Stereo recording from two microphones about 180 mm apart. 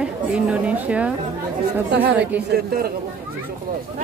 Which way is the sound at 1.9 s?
55° right (ahead or behind).